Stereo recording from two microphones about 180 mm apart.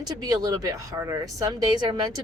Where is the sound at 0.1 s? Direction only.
20° right (ahead or behind).